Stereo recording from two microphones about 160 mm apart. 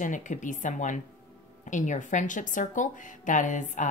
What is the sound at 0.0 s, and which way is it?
Speech, 50° left (ahead or behind).